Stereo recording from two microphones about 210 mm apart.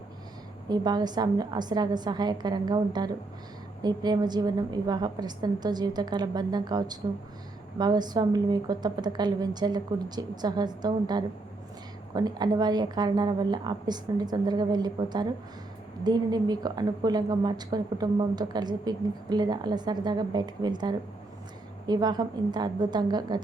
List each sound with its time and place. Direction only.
0.7 s a woman's voice: 20° right (ahead or behind)